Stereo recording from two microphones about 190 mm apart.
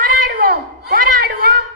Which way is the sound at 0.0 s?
50° right (ahead or behind).